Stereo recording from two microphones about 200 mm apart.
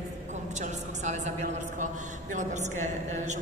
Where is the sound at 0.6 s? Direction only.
35° right (ahead or behind).